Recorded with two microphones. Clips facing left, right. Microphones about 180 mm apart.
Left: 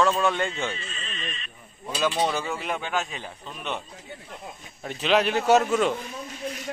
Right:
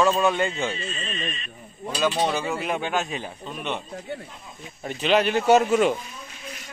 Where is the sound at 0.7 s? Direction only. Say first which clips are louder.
Right 6 dB; 35° right (ahead or behind).